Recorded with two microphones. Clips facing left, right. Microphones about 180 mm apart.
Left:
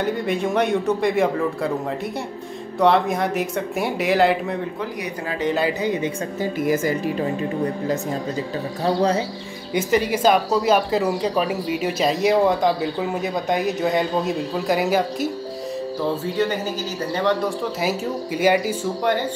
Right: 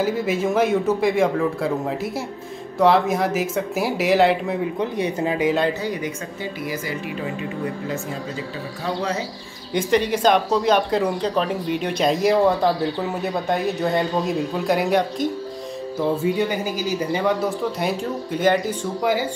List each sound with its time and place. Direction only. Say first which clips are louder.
0.0 s a woman's voice: right 1 dB; 5° right (ahead or behind)
2.8 s a woman's voice: right 1 dB; centre (ahead or behind)
4.7 s speech: right 5 dB; 25° right (ahead or behind)
5.4 s a woman's voice: even; centre (ahead or behind)
5.8 s speech: left 3 dB; 20° left (ahead or behind)
6.4 s speech: left 8 dB; 45° left (ahead or behind)
8.8 s speech: left 6 dB; 35° left (ahead or behind)
9.8 s a woman's voice: even; 5° left (ahead or behind)
17.0 s a woman's voice: left 1 dB; 10° right (ahead or behind); by 18.8 s 10° left (ahead or behind)